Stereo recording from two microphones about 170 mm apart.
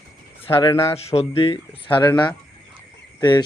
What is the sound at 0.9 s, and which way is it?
Speech, 35° left (ahead or behind).